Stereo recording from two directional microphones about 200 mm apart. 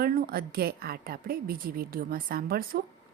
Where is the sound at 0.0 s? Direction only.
45° right (ahead or behind).